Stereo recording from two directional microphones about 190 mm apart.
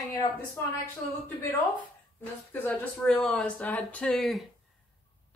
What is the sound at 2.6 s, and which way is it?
Speech, 5° left (ahead or behind).